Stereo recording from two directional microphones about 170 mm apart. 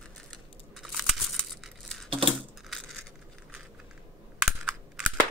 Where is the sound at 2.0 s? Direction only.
35° right (ahead or behind).